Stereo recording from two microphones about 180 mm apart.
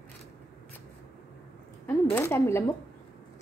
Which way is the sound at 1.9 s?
15° left (ahead or behind).